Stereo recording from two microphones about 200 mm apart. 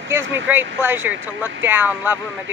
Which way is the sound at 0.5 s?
10° right (ahead or behind).